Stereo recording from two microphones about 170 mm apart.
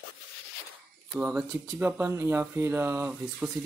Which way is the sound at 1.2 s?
10° right (ahead or behind).